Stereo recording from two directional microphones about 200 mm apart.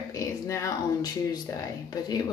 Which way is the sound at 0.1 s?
15° left (ahead or behind).